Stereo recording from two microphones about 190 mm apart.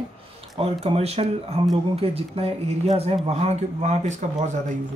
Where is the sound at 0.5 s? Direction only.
35° right (ahead or behind).